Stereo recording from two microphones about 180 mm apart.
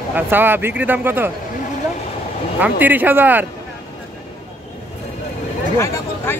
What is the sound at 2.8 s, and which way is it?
Speech, 10° right (ahead or behind).